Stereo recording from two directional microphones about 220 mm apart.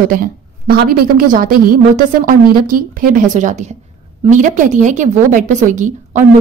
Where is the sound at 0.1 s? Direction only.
40° right (ahead or behind).